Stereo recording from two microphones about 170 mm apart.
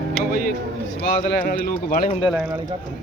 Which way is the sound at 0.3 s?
55° left (ahead or behind).